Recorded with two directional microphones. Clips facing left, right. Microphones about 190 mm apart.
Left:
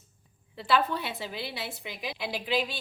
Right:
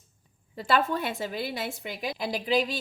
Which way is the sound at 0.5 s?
45° right (ahead or behind).